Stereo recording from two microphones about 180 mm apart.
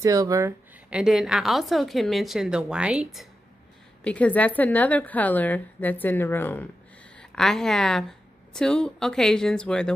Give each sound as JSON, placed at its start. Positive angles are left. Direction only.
{"t": 0.0, "sound": "speech", "side_deg": -20}
{"t": 0.8, "sound": "a woman's voice", "side_deg": -5}
{"t": 4.0, "sound": "a woman's voice", "side_deg": 5}